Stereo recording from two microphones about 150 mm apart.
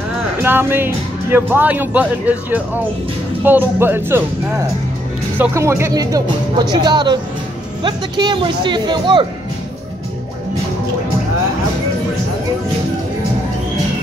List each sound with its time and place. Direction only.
0.4 s speech: 15° right (ahead or behind)
5.4 s speech: 20° right (ahead or behind)